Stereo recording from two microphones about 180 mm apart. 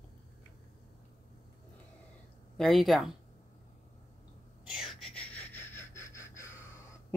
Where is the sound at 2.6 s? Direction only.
Centre (ahead or behind).